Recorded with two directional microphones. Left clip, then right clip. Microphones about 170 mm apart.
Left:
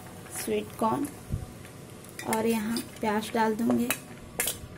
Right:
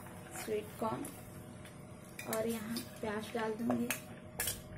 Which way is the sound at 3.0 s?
50° left (ahead or behind).